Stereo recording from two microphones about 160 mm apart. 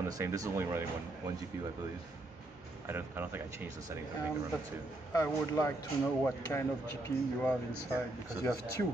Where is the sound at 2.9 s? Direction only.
15° right (ahead or behind).